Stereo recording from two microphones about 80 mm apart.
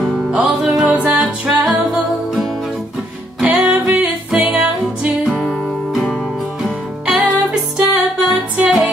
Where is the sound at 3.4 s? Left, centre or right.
Centre.